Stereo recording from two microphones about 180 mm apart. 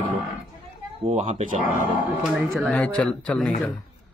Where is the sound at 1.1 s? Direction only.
35° right (ahead or behind).